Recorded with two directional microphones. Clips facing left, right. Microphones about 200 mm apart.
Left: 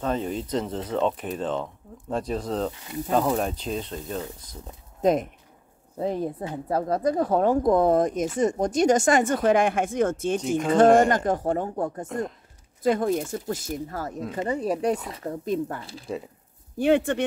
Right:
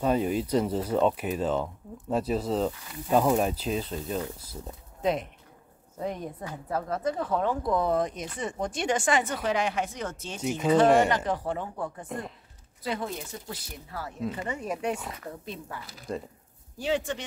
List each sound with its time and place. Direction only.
0.0 s speech: 10° right (ahead or behind)
5.0 s a woman's voice: 45° left (ahead or behind)
5.9 s a woman's voice: 30° left (ahead or behind); by 15.8 s 45° left (ahead or behind)
15.8 s speech: 30° left (ahead or behind)
16.7 s speech: 55° left (ahead or behind)